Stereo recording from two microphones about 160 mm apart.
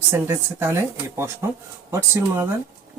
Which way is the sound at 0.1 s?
15° right (ahead or behind).